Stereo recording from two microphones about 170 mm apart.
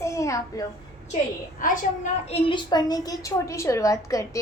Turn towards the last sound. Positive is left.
turn(degrees=20)  # may be behind; listen again after turning